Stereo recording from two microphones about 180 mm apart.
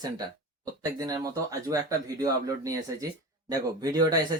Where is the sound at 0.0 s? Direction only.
20° right (ahead or behind).